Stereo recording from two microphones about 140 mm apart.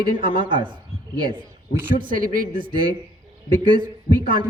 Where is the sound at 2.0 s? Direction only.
85° right.